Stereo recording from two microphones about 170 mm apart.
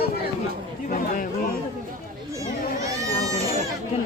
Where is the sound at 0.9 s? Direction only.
50° left (ahead or behind).